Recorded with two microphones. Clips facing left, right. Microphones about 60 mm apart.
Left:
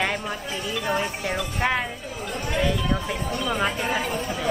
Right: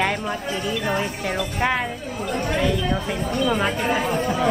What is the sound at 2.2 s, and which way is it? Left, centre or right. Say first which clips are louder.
Speech: right 5 dB; right.